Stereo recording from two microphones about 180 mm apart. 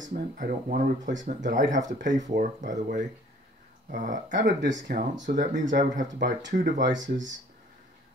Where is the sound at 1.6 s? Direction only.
85° right.